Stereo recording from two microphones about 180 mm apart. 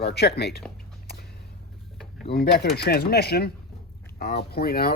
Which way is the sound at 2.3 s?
60° left (ahead or behind).